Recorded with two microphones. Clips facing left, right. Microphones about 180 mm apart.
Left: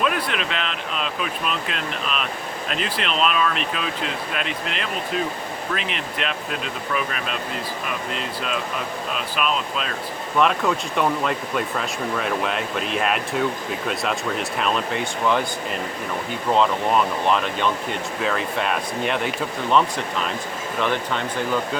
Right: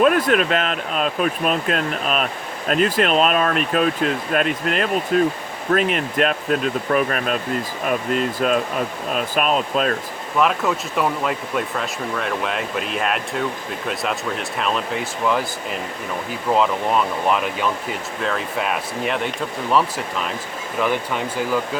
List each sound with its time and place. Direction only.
0.0 s speech: 45° right (ahead or behind)
10.3 s speech: 5° right (ahead or behind)
20.7 s speech: 10° right (ahead or behind)